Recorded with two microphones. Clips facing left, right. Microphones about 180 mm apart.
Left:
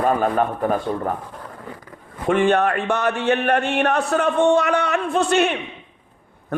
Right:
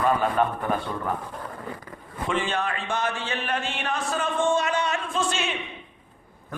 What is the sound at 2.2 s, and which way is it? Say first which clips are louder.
A man's voice: left 10 dB; 60° left (ahead or behind).